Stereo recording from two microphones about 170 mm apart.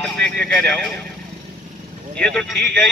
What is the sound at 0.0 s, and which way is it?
Speech, 5° left (ahead or behind).